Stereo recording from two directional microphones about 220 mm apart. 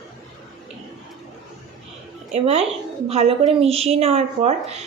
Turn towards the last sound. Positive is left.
turn(degrees=-30)  # may be behind; listen again after turning